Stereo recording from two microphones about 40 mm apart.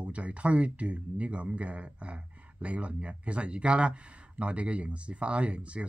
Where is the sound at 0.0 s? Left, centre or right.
Right.